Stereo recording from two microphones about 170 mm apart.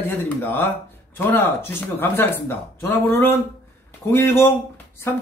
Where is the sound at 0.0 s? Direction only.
10° left (ahead or behind).